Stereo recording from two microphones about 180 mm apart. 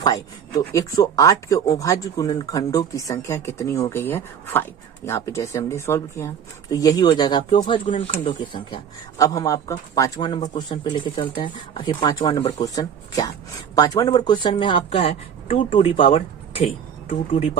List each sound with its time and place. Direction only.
0.0 s a woman's voice: 20° left (ahead or behind)